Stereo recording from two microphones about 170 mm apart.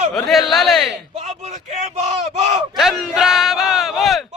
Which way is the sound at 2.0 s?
40° right (ahead or behind).